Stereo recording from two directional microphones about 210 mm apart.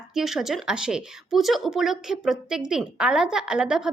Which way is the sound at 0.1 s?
Centre (ahead or behind).